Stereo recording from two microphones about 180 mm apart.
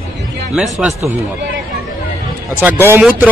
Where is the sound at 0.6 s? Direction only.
5° right (ahead or behind).